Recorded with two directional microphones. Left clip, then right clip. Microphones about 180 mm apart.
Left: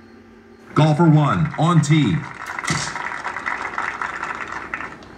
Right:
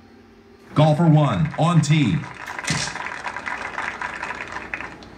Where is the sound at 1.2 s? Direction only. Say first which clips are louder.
Left 1 dB; 25° right (ahead or behind).